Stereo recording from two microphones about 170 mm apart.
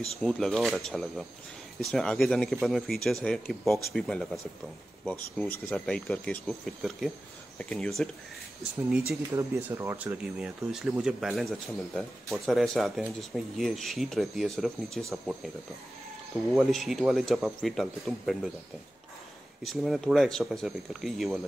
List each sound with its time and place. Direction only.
0.2 s speech: 5° left (ahead or behind)
9.3 s speech: 15° right (ahead or behind)
16.5 s speech: centre (ahead or behind)
19.6 s speech: centre (ahead or behind)